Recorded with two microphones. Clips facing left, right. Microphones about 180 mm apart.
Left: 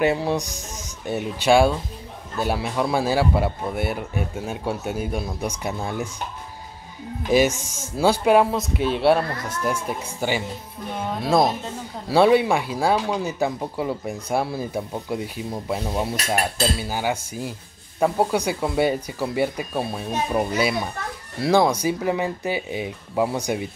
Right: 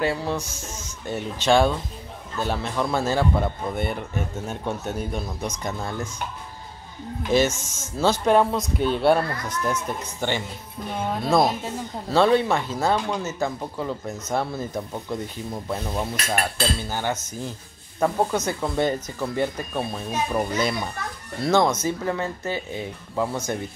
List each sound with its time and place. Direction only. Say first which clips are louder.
0.0 s speech: left 4 dB; 15° left (ahead or behind)
7.2 s speech: left 2 dB; 10° left (ahead or behind)
12.1 s speech: left 2 dB; 10° left (ahead or behind)